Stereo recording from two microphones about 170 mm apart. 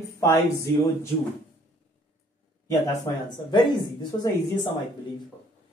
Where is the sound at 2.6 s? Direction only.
25° left (ahead or behind).